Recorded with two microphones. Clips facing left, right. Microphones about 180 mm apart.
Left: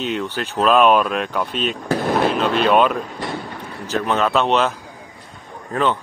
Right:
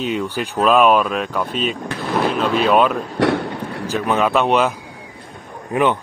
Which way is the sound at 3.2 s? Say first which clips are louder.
Right 10 dB; 75° right (ahead or behind).